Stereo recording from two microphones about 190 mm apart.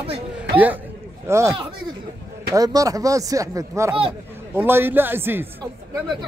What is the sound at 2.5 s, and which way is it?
Speech, 20° right (ahead or behind).